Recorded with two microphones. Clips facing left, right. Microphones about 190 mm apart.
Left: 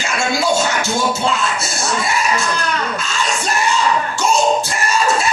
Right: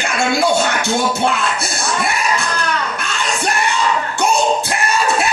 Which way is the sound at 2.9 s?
60° right (ahead or behind).